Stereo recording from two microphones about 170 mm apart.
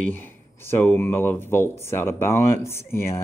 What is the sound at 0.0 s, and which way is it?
Speech, 10° left (ahead or behind).